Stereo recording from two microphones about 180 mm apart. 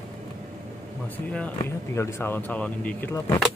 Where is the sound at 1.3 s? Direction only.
10° left (ahead or behind).